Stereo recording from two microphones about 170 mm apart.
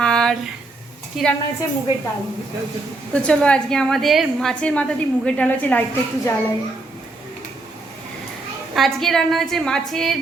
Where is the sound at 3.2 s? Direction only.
5° left (ahead or behind).